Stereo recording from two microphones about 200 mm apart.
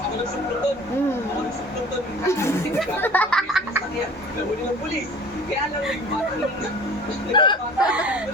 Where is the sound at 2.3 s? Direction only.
15° left (ahead or behind).